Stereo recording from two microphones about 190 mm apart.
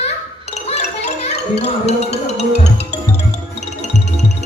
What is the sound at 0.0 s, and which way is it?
Wind chime, 35° left (ahead or behind).